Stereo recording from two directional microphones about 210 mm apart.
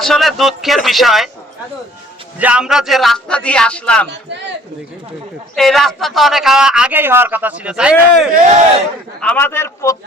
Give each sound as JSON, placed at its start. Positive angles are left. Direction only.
{"t": 0.0, "sound": "a man's voice", "side_deg": 0}
{"t": 2.4, "sound": "a man's voice", "side_deg": -5}
{"t": 4.3, "sound": "a man's voice", "side_deg": -55}
{"t": 5.5, "sound": "a man's voice", "side_deg": 0}
{"t": 9.2, "sound": "a man's voice", "side_deg": 10}